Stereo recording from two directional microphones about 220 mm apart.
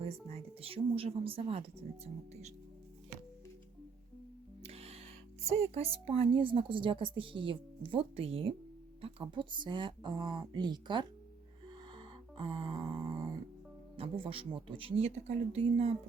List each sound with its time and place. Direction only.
0.0 s a woman's voice: 25° right (ahead or behind)
4.6 s music: 25° right (ahead or behind)
5.5 s a woman's voice: 30° right (ahead or behind)
11.9 s music: 20° right (ahead or behind)
13.9 s a woman's voice: 25° right (ahead or behind)